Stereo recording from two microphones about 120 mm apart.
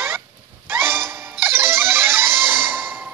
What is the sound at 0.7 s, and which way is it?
Music, 20° right (ahead or behind).